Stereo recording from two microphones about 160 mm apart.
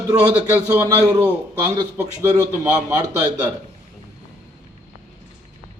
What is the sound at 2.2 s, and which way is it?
Speech, 15° right (ahead or behind).